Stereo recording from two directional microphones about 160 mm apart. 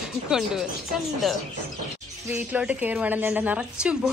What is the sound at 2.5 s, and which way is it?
A woman's voice, 10° right (ahead or behind).